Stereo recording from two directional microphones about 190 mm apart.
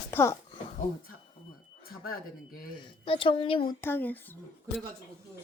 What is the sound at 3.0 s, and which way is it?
Speech, 25° left (ahead or behind).